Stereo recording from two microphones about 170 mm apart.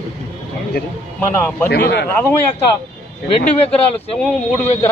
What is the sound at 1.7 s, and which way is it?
Speech, 70° left (ahead or behind).